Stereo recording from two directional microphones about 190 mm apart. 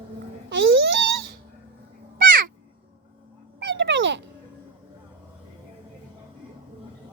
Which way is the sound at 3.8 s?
70° right (ahead or behind).